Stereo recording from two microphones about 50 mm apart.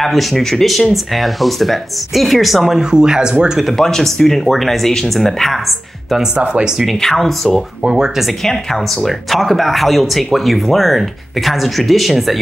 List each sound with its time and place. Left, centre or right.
0.0 s speech: centre
2.8 s speech: centre
3.7 s speech: centre
6.3 s speech: right
6.9 s speech: centre
7.8 s speech: centre
8.3 s speech: centre